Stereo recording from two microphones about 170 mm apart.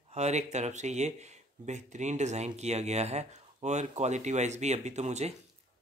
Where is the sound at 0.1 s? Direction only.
40° right (ahead or behind).